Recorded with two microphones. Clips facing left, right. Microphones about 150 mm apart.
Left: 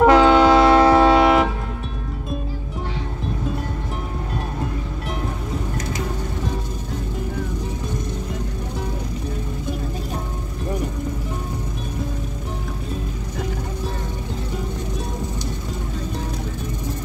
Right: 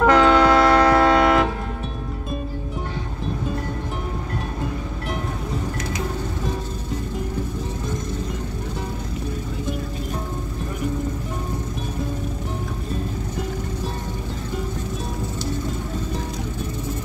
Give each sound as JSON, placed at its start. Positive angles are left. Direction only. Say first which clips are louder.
{"t": 0.0, "sound": "music", "louder": "left 2 dB", "side_deg": 25}